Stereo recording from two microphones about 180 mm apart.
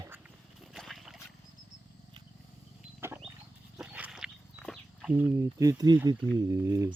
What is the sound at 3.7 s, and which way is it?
Wild animals, 5° right (ahead or behind).